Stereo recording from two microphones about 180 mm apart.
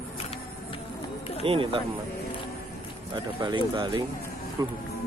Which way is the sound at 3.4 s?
25° right (ahead or behind).